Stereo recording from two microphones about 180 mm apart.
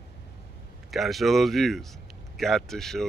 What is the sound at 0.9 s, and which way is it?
Speech, centre (ahead or behind).